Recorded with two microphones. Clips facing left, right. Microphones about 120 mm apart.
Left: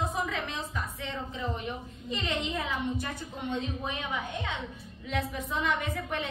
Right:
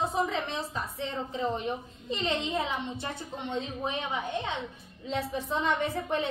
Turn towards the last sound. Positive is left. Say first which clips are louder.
# right 4 dB
turn(degrees=-30)  # may be behind; listen again after turning